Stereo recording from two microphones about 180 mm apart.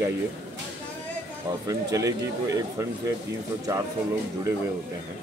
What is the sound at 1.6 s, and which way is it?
A man's voice, 20° right (ahead or behind).